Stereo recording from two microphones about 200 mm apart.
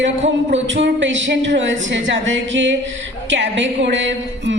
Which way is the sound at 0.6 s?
65° right (ahead or behind).